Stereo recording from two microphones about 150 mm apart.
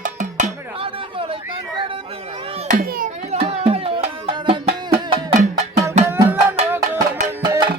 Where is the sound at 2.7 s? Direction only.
70° right (ahead or behind).